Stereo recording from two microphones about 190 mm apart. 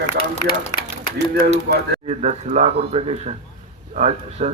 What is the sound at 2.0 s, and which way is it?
Speech, 35° right (ahead or behind).